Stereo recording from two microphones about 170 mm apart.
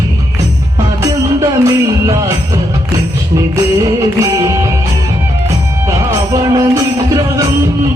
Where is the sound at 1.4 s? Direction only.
20° right (ahead or behind).